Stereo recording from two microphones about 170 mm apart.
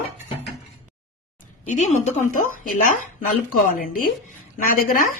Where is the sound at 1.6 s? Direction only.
45° left (ahead or behind).